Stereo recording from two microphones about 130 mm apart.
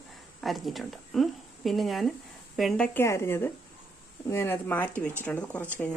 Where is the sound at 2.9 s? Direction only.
20° left (ahead or behind).